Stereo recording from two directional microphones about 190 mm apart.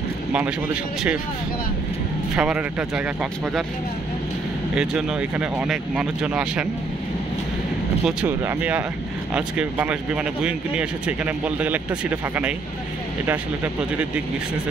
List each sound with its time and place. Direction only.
2.3 s speech: 5° right (ahead or behind)
4.7 s speech: 5° right (ahead or behind)
8.0 s speech: 5° right (ahead or behind)